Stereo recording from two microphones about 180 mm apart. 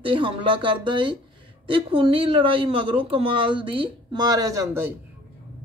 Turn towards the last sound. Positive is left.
turn(degrees=-15)  # may be behind; listen again after turning